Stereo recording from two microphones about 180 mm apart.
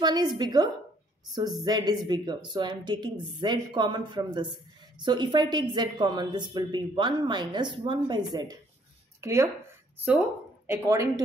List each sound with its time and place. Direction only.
0.0 s a woman's voice: 25° right (ahead or behind)
10.7 s speech: 15° right (ahead or behind)